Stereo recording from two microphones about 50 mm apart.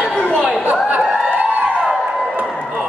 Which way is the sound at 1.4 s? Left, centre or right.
Right.